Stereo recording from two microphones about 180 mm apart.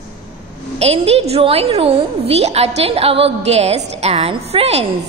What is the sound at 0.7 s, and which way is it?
A woman's voice, 35° right (ahead or behind).